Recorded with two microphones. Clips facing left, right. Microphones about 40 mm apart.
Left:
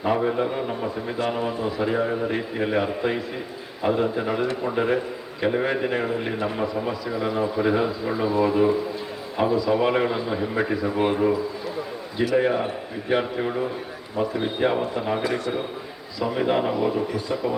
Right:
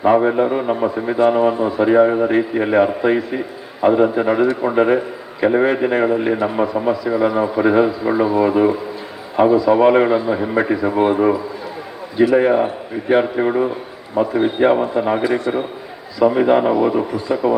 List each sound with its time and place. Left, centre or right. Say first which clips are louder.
0.0 s a man's voice: right 8 dB; right